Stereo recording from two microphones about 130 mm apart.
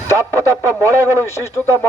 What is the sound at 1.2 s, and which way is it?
Speech, 20° left (ahead or behind).